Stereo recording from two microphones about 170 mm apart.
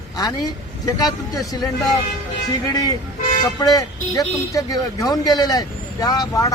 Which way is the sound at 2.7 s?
25° left (ahead or behind).